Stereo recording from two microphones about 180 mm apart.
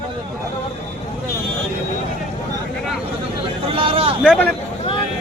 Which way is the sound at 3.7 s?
30° right (ahead or behind).